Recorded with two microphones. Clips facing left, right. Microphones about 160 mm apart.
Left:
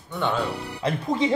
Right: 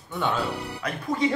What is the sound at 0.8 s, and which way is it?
Speech, 25° left (ahead or behind).